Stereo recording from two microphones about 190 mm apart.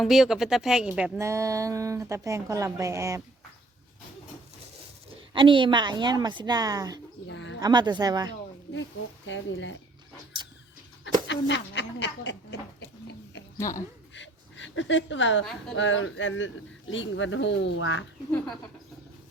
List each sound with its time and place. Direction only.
0.0 s speech: centre (ahead or behind)
1.2 s speech: 15° right (ahead or behind)
5.3 s a woman's voice: 25° right (ahead or behind)
7.3 s bird: 75° left (ahead or behind)
7.6 s a woman's voice: 20° right (ahead or behind)
8.7 s speech: 80° left
11.3 s speech: 70° left (ahead or behind)
13.6 s a woman's voice: 15° left (ahead or behind)
14.1 s a sound: 80° left
15.7 s speech: 85° left
16.9 s speech: 80° left